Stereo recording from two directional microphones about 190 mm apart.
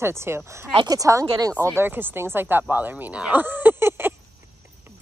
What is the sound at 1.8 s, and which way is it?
Speech, 10° right (ahead or behind).